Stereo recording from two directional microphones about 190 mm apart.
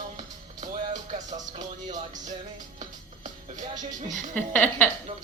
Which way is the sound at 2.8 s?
40° right (ahead or behind).